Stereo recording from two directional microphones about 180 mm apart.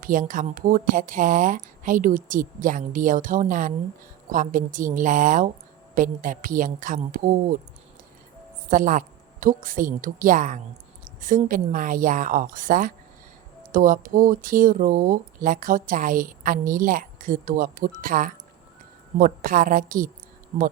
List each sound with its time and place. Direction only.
0.0 s speech: 50° right (ahead or behind)
8.7 s speech: 45° right (ahead or behind)